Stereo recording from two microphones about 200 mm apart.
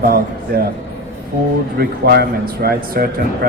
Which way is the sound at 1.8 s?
50° right (ahead or behind).